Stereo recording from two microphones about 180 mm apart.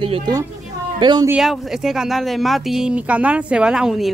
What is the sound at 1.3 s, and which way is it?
Speech, centre (ahead or behind).